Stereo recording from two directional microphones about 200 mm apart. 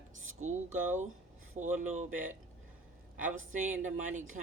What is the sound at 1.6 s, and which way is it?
Speech, 35° right (ahead or behind).